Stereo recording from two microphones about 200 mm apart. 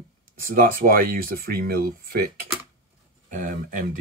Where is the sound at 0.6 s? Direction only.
45° right (ahead or behind).